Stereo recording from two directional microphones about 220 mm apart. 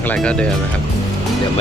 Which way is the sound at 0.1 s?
5° left (ahead or behind).